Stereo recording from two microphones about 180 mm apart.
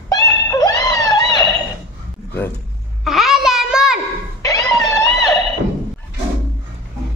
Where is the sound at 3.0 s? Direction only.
Centre (ahead or behind).